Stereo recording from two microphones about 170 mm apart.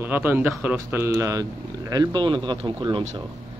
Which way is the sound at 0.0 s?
10° right (ahead or behind).